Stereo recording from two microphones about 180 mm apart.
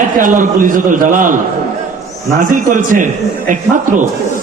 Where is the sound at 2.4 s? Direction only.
45° right (ahead or behind).